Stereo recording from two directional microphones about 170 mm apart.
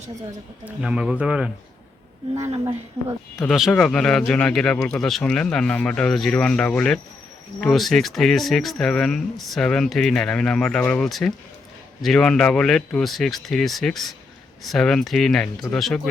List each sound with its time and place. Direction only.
0.6 s speech: 5° right (ahead or behind)
2.5 s speech: 30° right (ahead or behind)
3.5 s speech: centre (ahead or behind)